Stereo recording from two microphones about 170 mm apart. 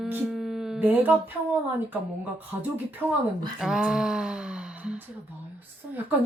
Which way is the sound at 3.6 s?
5° right (ahead or behind).